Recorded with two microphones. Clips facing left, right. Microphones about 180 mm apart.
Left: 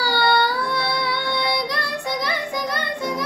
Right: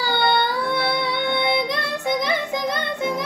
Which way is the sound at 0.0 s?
20° right (ahead or behind).